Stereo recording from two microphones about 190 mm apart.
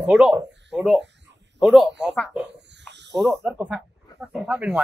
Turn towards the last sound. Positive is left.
turn(degrees=-5)  # may be behind; listen again after turning